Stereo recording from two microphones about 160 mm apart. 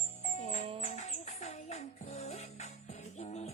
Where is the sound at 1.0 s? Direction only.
45° left (ahead or behind).